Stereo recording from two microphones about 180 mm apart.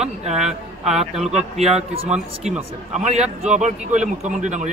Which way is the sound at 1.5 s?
35° right (ahead or behind).